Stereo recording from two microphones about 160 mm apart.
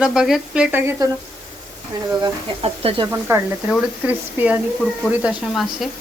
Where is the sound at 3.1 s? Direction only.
15° right (ahead or behind).